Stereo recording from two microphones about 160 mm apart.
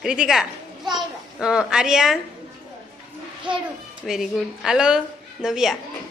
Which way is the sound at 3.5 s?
30° right (ahead or behind).